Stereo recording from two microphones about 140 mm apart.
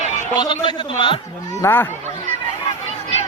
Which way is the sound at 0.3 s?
35° left (ahead or behind).